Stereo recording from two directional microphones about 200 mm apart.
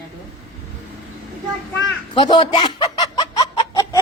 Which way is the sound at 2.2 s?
25° left (ahead or behind).